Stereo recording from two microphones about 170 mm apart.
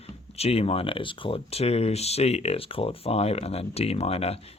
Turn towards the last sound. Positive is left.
turn(degrees=35)  # may be behind; listen again after turning